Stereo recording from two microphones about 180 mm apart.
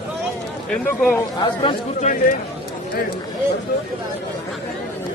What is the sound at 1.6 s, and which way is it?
Speech, 40° left (ahead or behind).